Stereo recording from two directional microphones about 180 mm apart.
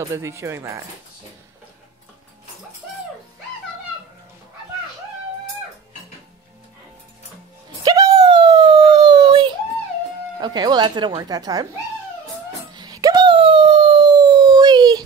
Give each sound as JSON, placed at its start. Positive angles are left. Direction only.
{"t": 0.0, "sound": "speech", "side_deg": -15}
{"t": 7.8, "sound": "dog", "side_deg": -20}
{"t": 10.4, "sound": "speech", "side_deg": -25}
{"t": 12.7, "sound": "dog", "side_deg": -20}